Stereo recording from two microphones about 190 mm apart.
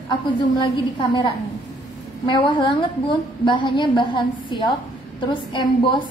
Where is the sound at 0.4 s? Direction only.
25° left (ahead or behind).